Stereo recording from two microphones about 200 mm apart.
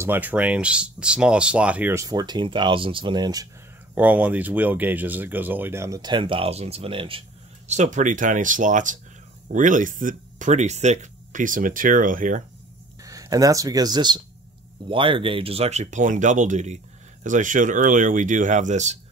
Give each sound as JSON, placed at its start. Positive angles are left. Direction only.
{"t": 0.0, "sound": "speech", "side_deg": -10}
{"t": 3.9, "sound": "speech", "side_deg": -10}
{"t": 13.0, "sound": "speech", "side_deg": -15}